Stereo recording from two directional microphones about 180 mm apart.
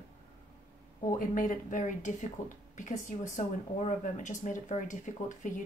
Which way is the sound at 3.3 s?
45° left (ahead or behind).